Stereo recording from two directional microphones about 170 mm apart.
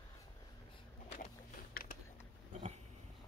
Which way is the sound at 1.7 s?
60° left (ahead or behind).